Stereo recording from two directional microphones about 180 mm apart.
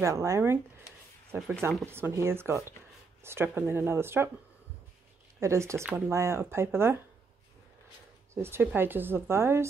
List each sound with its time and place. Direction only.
0.0 s speech: 15° right (ahead or behind)
5.4 s speech: 15° right (ahead or behind)
8.4 s speech: 10° right (ahead or behind)